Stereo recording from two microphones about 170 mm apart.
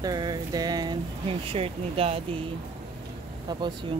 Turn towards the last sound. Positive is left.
turn(degrees=-25)  # may be behind; listen again after turning